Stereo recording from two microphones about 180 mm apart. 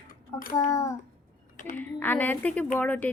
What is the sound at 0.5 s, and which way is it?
Speech, 15° left (ahead or behind).